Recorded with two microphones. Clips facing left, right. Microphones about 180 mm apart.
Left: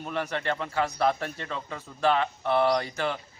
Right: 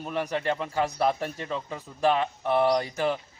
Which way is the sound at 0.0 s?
10° right (ahead or behind).